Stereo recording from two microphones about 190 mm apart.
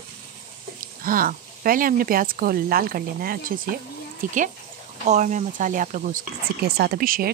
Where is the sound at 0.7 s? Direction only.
50° right (ahead or behind).